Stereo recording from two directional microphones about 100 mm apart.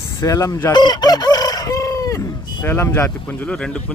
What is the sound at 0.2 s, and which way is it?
Speech, 35° left (ahead or behind).